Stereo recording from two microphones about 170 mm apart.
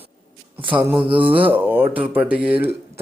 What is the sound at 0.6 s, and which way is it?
Speech, 30° right (ahead or behind).